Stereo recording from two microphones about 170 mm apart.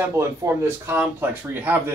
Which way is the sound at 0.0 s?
15° right (ahead or behind).